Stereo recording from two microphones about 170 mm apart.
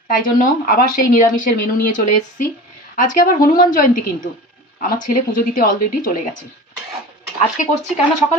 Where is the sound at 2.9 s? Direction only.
50° left (ahead or behind).